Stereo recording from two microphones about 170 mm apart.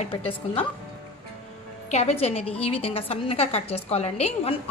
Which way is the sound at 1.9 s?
40° left (ahead or behind).